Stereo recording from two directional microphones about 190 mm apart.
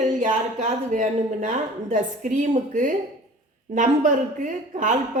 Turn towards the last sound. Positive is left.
turn(degrees=-40)  # may be behind; listen again after turning